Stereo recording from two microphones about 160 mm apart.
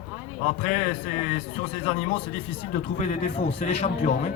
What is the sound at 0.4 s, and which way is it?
Speech, 60° left (ahead or behind).